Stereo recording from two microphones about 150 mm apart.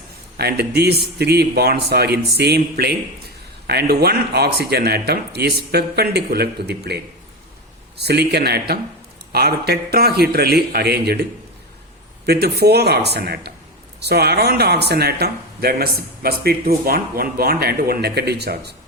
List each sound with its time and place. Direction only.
0.3 s a man's voice: 90° right